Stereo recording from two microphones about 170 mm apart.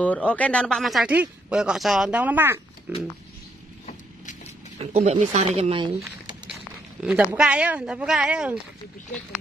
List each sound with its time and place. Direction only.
0.0 s speech: 5° left (ahead or behind); by 2.6 s 10° right (ahead or behind)
4.7 s speech: 40° right (ahead or behind)
7.0 s speech: 5° right (ahead or behind)